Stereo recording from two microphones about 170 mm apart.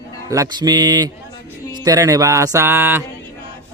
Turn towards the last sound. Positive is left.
turn(degrees=-10)  # may be behind; listen again after turning